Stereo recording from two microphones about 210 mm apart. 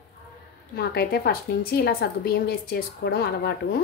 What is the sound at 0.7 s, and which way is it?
A woman's voice, 50° left (ahead or behind).